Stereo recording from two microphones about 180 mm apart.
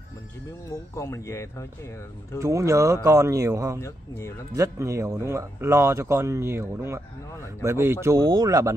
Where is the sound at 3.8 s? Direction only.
15° left (ahead or behind).